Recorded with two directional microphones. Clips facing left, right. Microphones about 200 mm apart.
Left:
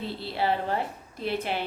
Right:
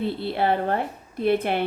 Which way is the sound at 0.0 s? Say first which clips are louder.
Right 5 dB; 55° right (ahead or behind).